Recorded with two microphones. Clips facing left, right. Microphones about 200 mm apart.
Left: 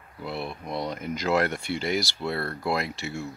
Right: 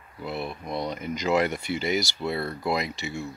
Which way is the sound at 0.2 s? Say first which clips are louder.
Right 1 dB; centre (ahead or behind).